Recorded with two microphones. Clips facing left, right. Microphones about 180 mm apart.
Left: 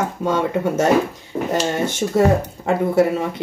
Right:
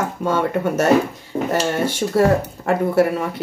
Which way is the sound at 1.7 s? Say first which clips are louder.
Even; 25° left (ahead or behind).